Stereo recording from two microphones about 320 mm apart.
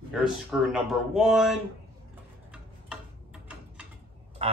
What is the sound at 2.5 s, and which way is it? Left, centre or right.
Tick-tock, centre.